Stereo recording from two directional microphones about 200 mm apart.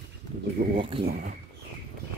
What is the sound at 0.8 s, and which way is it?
Speech, 25° right (ahead or behind).